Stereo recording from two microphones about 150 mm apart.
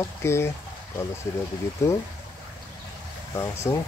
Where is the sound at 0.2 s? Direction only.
20° left (ahead or behind).